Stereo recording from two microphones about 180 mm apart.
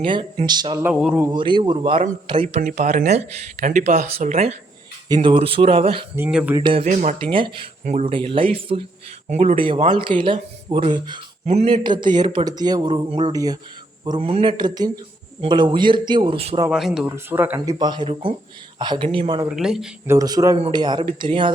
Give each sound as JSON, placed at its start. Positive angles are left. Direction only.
{"t": 0.0, "sound": "speech", "side_deg": -30}
{"t": 0.8, "sound": "speech", "side_deg": -5}
{"t": 1.3, "sound": "speech", "side_deg": -25}
{"t": 2.6, "sound": "speech", "side_deg": -45}
{"t": 5.0, "sound": "speech", "side_deg": -25}
{"t": 6.1, "sound": "speech", "side_deg": -10}
{"t": 6.6, "sound": "speech", "side_deg": -25}
{"t": 6.8, "sound": "speech", "side_deg": -45}
{"t": 7.2, "sound": "speech", "side_deg": -30}
{"t": 16.6, "sound": "speech", "side_deg": -5}
{"t": 17.1, "sound": "speech", "side_deg": -15}
{"t": 17.7, "sound": "speech", "side_deg": -25}
{"t": 19.5, "sound": "speech", "side_deg": -5}
{"t": 20.1, "sound": "speech", "side_deg": -20}